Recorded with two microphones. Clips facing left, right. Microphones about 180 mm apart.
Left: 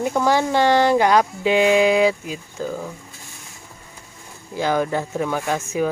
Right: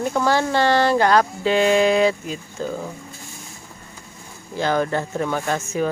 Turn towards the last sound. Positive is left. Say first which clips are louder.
# even
turn(degrees=5)  # may be behind; listen again after turning